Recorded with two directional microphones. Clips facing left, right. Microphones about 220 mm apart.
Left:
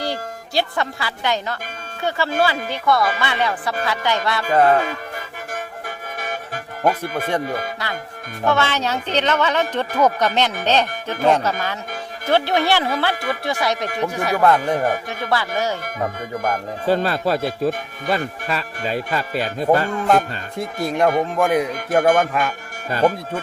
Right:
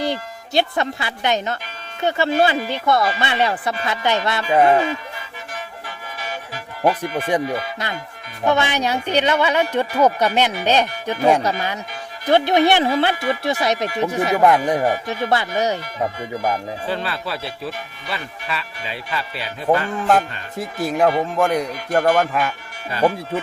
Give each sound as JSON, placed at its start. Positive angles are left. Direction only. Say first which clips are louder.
{"t": 0.0, "sound": "speech", "louder": "right 2 dB", "side_deg": -20}
{"t": 4.5, "sound": "speech", "louder": "right 1 dB", "side_deg": -10}
{"t": 6.1, "sound": "music", "louder": "left 1 dB", "side_deg": 50}
{"t": 8.4, "sound": "speech", "louder": "right 1 dB", "side_deg": -15}
{"t": 16.8, "sound": "speech", "louder": "left 12 dB", "side_deg": 40}
{"t": 20.1, "sound": "speech", "louder": "right 2 dB", "side_deg": 0}